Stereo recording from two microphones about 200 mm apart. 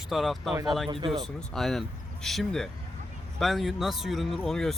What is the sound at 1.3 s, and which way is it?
Speech, centre (ahead or behind).